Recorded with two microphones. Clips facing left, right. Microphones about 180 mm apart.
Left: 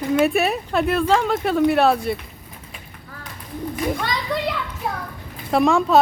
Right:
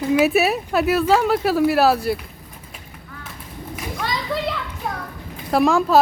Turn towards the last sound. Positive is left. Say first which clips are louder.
# even
turn(degrees=0)  # may be behind; listen again after turning